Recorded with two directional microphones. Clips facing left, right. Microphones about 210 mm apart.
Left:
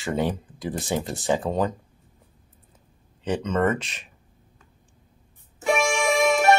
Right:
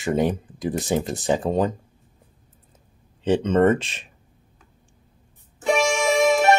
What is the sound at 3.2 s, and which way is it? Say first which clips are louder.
Speech: right 6 dB; 30° right (ahead or behind).